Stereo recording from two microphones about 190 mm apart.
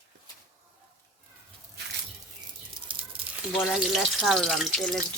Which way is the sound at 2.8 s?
25° right (ahead or behind).